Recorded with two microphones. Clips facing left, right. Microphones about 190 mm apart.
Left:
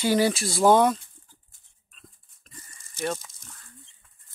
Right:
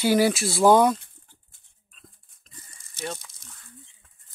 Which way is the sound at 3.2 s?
65° right (ahead or behind).